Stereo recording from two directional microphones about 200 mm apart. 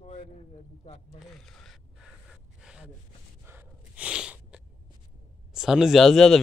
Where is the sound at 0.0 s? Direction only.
35° left (ahead or behind).